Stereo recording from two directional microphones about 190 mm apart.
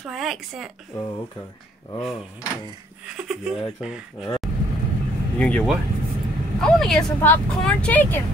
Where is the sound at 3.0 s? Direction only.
5° right (ahead or behind).